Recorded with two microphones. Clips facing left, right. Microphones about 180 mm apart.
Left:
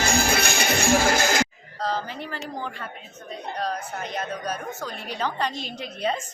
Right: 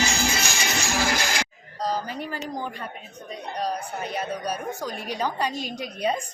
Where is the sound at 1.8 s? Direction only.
15° right (ahead or behind).